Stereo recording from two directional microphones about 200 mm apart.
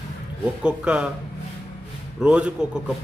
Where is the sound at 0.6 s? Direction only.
5° right (ahead or behind).